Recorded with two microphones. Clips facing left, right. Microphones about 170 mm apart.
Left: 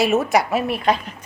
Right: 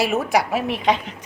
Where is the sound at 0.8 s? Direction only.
90° right.